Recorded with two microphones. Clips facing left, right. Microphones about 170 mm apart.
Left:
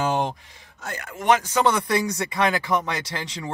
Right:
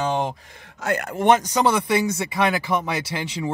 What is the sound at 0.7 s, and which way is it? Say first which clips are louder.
Speech: right 10 dB; 75° right (ahead or behind).